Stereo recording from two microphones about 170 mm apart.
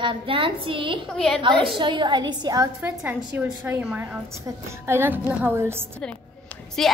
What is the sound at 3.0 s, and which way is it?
A woman's voice, 10° right (ahead or behind).